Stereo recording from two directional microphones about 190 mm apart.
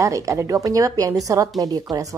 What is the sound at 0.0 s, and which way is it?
A woman's voice, 15° right (ahead or behind).